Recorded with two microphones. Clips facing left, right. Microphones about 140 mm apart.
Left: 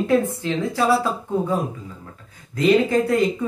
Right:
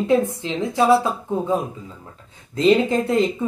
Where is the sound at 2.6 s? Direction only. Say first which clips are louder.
Even; 25° right (ahead or behind).